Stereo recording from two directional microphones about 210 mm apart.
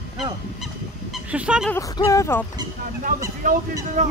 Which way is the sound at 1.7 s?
15° left (ahead or behind).